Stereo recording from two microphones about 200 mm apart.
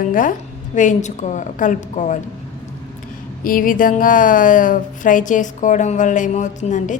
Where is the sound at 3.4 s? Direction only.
45° left (ahead or behind).